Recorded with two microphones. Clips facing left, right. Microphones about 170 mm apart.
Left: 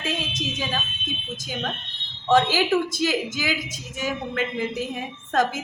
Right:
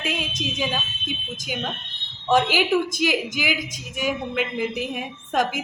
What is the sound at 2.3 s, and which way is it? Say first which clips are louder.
Speech: even; 15° right (ahead or behind).